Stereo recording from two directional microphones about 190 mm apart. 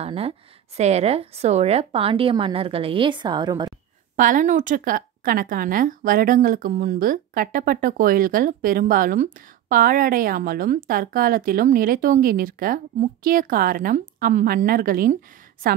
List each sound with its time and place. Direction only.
0.0 s a woman's voice: 30° right (ahead or behind)
4.2 s a woman's voice: 45° right (ahead or behind)